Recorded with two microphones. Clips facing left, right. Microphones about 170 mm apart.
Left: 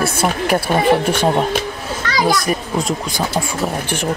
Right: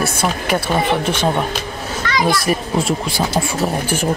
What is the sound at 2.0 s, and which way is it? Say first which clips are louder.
Children playing: left 1 dB; 40° left (ahead or behind).